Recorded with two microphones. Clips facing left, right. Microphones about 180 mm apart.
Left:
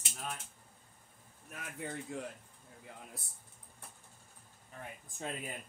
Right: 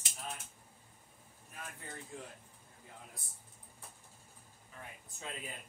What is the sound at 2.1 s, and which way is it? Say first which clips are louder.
Speech: left 5 dB; 70° left (ahead or behind).